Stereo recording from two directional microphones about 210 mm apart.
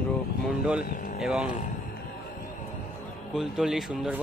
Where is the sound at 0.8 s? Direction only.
45° left (ahead or behind).